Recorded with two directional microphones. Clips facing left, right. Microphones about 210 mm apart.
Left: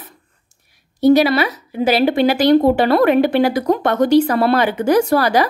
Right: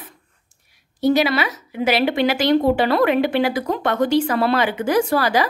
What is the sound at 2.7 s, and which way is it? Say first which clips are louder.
A woman's voice: left 4 dB; 45° left (ahead or behind).